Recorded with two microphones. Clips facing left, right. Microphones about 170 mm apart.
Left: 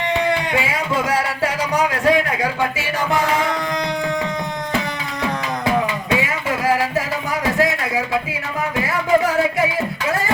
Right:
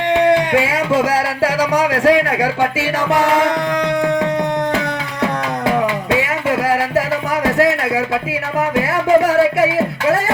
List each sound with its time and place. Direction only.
0.1 s speech: 65° right (ahead or behind)
6.1 s music: 70° right (ahead or behind)